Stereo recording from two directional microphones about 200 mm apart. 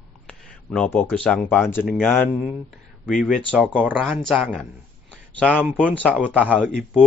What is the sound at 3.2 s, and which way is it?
Speech, centre (ahead or behind).